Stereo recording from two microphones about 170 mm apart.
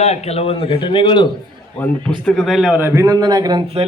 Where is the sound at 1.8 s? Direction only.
5° left (ahead or behind).